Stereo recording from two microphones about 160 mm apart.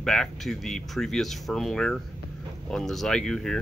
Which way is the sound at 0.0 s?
5° left (ahead or behind).